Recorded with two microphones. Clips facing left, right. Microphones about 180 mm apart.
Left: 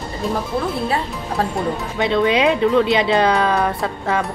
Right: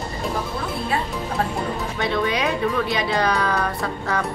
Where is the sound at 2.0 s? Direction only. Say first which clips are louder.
Left 7 dB; 20° left (ahead or behind).